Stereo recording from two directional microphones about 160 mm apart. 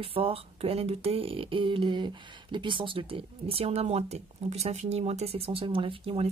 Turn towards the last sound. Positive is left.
turn(degrees=-35)  # may be behind; listen again after turning